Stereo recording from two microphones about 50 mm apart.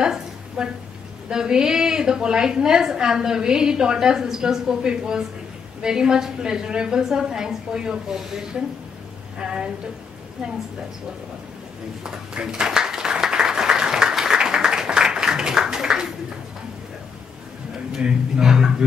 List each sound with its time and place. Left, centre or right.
0.0 s a sound: centre
1.3 s a woman's voice: centre
12.0 s applause: centre
17.9 s a woman's voice: centre